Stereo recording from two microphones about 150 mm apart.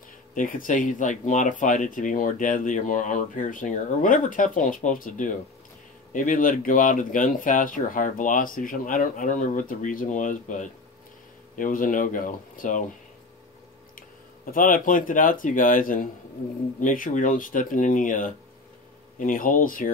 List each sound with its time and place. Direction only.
0.3 s speech: 65° left (ahead or behind)
13.9 s speech: 65° left (ahead or behind)